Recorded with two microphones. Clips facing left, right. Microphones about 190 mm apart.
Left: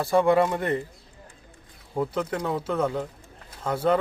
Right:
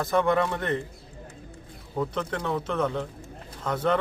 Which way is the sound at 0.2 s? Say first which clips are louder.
Left 4 dB; 10° left (ahead or behind).